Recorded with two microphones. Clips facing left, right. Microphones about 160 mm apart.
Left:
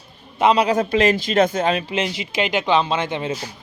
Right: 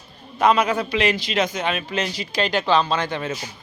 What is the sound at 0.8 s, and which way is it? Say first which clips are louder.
Speech: left 4 dB; 45° left (ahead or behind).